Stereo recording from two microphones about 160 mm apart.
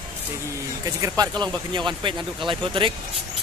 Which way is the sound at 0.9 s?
20° right (ahead or behind).